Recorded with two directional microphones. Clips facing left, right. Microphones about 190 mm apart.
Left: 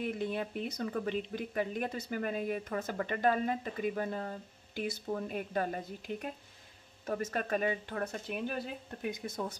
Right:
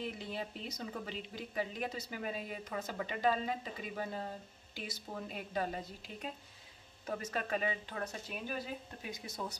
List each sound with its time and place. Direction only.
0.0 s speech: 55° left (ahead or behind)